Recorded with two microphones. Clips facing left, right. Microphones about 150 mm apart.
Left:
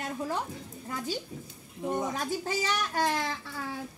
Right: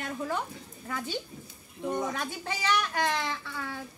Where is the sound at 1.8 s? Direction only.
20° left (ahead or behind).